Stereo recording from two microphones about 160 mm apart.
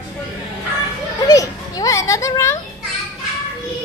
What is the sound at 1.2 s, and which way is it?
A child's voice, 20° left (ahead or behind).